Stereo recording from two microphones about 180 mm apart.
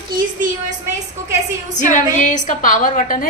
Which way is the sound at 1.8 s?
45° left (ahead or behind).